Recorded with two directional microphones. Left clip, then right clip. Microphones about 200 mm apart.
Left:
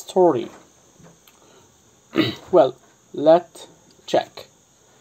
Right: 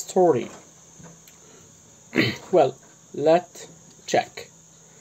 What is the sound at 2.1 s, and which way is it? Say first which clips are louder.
Speech: left 2 dB; 20° left (ahead or behind).